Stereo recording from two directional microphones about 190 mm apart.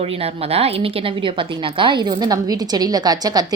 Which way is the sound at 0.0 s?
30° right (ahead or behind).